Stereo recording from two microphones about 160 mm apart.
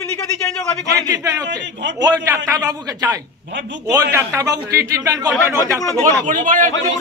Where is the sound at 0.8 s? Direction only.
20° right (ahead or behind).